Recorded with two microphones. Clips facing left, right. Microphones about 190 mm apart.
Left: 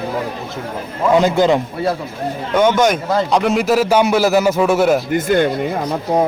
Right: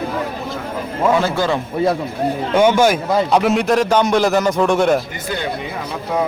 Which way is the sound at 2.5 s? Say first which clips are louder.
Even; 10° right (ahead or behind).